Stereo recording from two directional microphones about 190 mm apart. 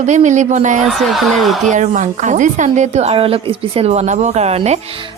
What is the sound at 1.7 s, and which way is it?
A woman's voice, 40° right (ahead or behind).